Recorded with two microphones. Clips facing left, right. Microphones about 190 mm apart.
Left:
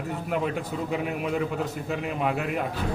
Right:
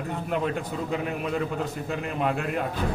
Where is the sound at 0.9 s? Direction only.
5° left (ahead or behind).